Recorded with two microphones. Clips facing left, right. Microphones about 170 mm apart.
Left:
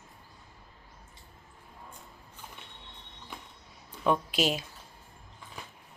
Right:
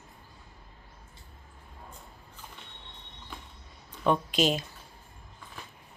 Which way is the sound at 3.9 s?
5° left (ahead or behind).